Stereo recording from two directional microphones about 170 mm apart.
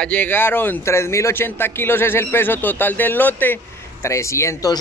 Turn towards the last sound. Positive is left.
turn(degrees=20)  # may be behind; listen again after turning